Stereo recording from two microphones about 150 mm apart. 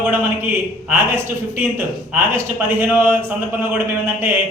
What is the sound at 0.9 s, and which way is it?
Speech, 15° right (ahead or behind).